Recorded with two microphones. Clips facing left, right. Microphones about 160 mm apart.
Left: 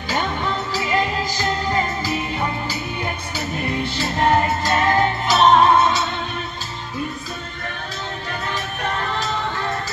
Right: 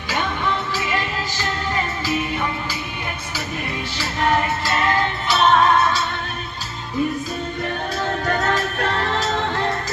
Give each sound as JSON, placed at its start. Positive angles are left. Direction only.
{"t": 0.1, "sound": "music", "side_deg": 35}
{"t": 4.2, "sound": "music", "side_deg": 25}
{"t": 5.7, "sound": "music", "side_deg": 20}
{"t": 8.3, "sound": "music", "side_deg": -75}